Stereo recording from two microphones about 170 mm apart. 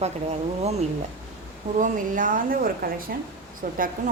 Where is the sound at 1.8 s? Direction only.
50° right (ahead or behind).